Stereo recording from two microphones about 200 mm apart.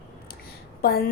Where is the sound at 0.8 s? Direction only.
50° left (ahead or behind).